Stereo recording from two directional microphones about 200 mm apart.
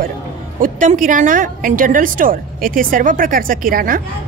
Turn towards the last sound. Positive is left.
turn(degrees=-45)  # may be behind; listen again after turning